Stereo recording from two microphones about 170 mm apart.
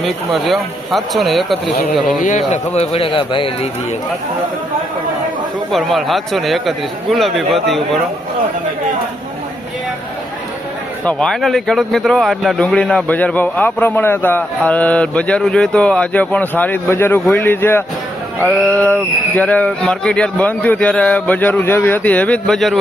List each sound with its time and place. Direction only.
0.0 s speech: centre (ahead or behind)
2.2 s speech: 45° left (ahead or behind)
5.7 s speech: centre (ahead or behind)
11.0 s speech: 5° left (ahead or behind)